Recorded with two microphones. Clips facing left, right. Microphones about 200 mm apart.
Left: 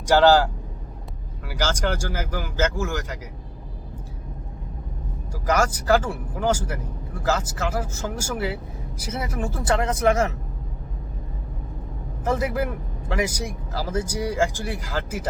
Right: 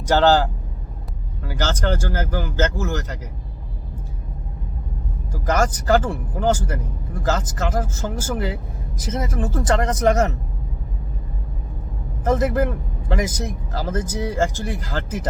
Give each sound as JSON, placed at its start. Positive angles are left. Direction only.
{"t": 0.0, "sound": "speech", "side_deg": 10}
{"t": 1.5, "sound": "speech", "side_deg": 10}
{"t": 5.3, "sound": "speech", "side_deg": 10}
{"t": 12.4, "sound": "speech", "side_deg": 10}